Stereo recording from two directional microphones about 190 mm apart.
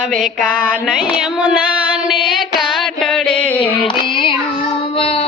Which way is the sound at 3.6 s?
25° left (ahead or behind).